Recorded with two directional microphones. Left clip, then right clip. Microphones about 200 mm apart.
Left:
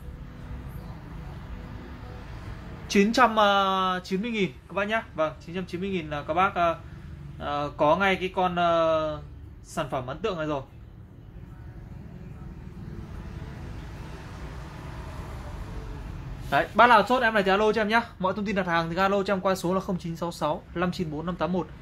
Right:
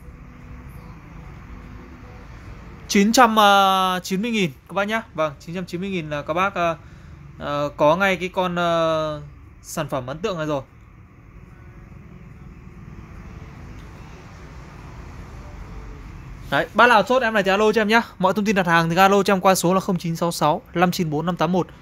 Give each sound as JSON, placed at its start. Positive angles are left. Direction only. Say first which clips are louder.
{"t": 2.9, "sound": "speech", "louder": "right 5 dB", "side_deg": -60}
{"t": 16.4, "sound": "speech", "louder": "right 3 dB", "side_deg": -60}